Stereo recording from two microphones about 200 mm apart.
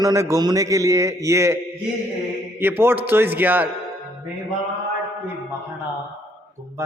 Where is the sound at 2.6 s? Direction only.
10° right (ahead or behind).